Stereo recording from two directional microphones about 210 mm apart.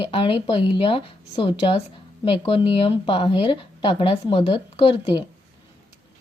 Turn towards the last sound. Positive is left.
turn(degrees=25)  # may be behind; listen again after turning